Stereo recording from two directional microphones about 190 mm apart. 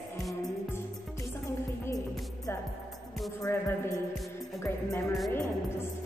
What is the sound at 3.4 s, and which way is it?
Speech, 15° left (ahead or behind).